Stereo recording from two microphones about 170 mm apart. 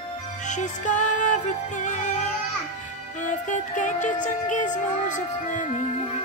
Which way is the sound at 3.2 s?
45° left (ahead or behind).